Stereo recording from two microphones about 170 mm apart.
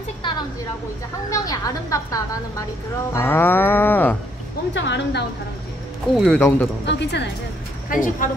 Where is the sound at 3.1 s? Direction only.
15° left (ahead or behind).